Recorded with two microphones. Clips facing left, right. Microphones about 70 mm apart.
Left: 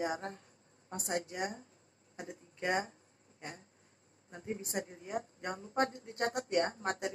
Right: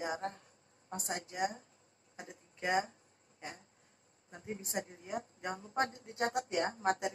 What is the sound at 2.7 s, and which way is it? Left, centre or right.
Speech, left.